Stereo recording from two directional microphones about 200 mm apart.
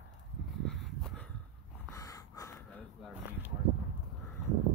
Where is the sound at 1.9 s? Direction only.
15° left (ahead or behind).